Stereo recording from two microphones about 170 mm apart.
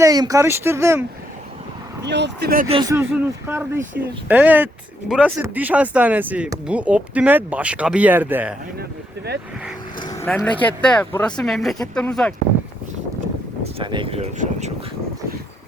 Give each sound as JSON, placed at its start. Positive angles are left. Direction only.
{"t": 0.0, "sound": "speech", "side_deg": -20}
{"t": 2.0, "sound": "speech", "side_deg": -90}
{"t": 2.8, "sound": "speech", "side_deg": -15}
{"t": 8.8, "sound": "speech", "side_deg": -75}
{"t": 10.0, "sound": "a sound", "side_deg": 20}
{"t": 10.2, "sound": "speech", "side_deg": 5}
{"t": 13.7, "sound": "speech", "side_deg": -30}